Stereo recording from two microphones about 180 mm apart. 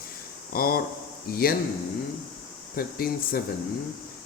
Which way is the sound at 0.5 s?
55° left (ahead or behind).